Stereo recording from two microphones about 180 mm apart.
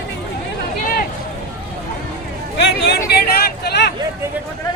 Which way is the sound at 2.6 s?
65° left (ahead or behind).